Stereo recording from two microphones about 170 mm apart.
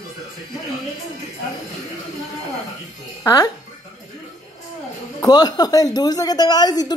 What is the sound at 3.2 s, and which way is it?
Speech, 20° left (ahead or behind).